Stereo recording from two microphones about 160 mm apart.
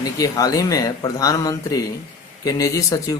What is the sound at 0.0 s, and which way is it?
Speech, 20° left (ahead or behind).